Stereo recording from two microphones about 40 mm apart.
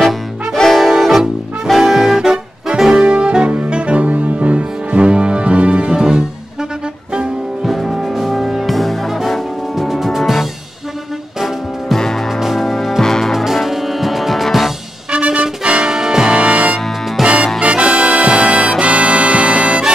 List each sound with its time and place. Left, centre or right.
0.7 s brass instrument: centre
1.8 s music: centre; by 5.9 s right
5.9 s music: centre
7.6 s music: centre
8.6 s music: centre
11.9 s music: centre
12.3 s music: centre
13.3 s music: centre
15.0 s music: right
16.3 s music: right